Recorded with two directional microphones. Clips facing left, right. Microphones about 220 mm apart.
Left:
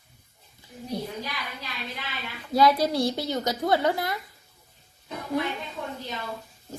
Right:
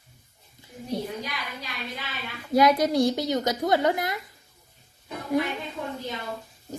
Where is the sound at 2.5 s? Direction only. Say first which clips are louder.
Right 1 dB; 20° right (ahead or behind).